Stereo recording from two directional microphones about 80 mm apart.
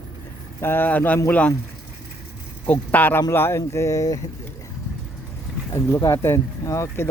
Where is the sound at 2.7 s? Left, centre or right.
Left.